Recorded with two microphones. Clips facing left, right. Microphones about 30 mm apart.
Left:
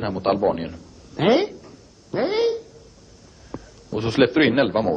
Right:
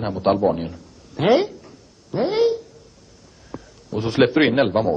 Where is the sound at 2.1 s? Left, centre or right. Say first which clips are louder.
Right 1 dB; centre.